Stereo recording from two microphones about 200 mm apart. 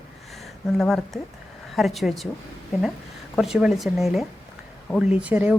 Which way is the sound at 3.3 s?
Centre (ahead or behind).